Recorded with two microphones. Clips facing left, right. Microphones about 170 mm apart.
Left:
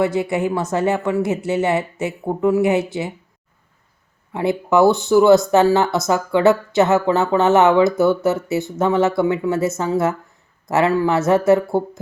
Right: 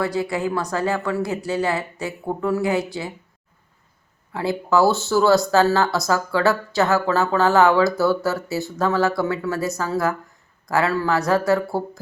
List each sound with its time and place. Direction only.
0.0 s speech: 20° left (ahead or behind)
4.3 s speech: 20° left (ahead or behind)